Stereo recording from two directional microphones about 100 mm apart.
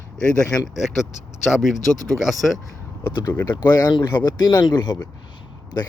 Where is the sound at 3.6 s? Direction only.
40° left (ahead or behind).